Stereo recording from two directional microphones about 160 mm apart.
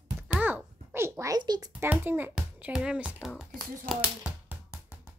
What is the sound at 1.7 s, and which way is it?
A child's voice, 10° right (ahead or behind).